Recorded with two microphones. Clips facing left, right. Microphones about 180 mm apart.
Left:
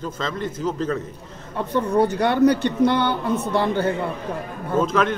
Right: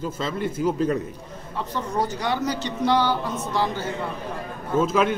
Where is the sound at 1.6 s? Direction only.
60° left (ahead or behind).